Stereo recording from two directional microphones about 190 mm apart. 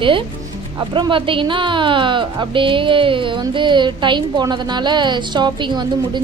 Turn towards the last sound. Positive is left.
turn(degrees=-25)  # may be behind; listen again after turning